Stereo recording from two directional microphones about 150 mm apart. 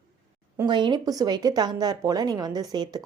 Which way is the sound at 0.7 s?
30° right (ahead or behind).